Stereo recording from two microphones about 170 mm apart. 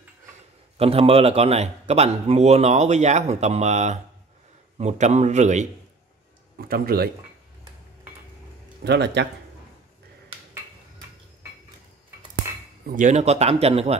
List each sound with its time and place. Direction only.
0.7 s a man's voice: 35° right (ahead or behind)
6.7 s speech: 60° right (ahead or behind)
8.8 s speech: 85° right
12.8 s a man's voice: 50° right (ahead or behind)